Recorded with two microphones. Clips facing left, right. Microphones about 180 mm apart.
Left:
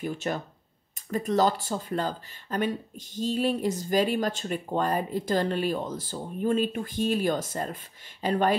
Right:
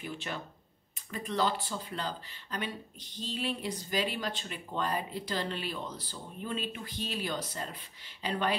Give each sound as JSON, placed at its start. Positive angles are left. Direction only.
{"t": 0.0, "sound": "speech", "side_deg": 45}